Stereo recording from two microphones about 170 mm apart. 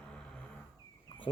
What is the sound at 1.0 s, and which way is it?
Insect, 30° left (ahead or behind).